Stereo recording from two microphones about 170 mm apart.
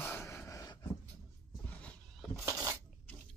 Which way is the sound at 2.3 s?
20° right (ahead or behind).